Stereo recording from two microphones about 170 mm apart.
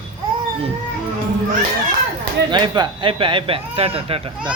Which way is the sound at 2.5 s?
30° right (ahead or behind).